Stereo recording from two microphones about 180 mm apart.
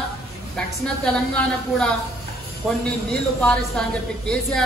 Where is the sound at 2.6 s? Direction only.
Centre (ahead or behind).